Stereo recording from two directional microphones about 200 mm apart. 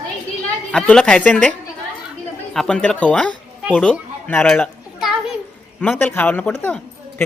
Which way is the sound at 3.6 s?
5° right (ahead or behind).